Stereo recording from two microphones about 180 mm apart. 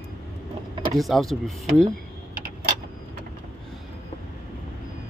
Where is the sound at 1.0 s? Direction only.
Centre (ahead or behind).